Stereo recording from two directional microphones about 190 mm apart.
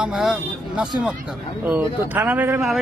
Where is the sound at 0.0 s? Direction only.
5° right (ahead or behind).